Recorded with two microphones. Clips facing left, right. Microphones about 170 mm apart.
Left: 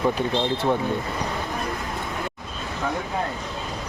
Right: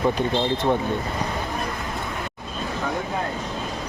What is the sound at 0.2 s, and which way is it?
Speech, 5° left (ahead or behind).